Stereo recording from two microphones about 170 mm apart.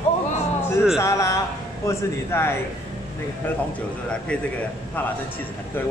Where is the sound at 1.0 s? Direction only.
20° left (ahead or behind).